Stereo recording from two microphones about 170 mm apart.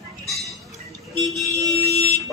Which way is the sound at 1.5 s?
20° right (ahead or behind).